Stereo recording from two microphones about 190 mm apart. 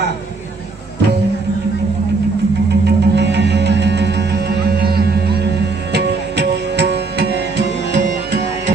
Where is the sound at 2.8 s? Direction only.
60° right (ahead or behind).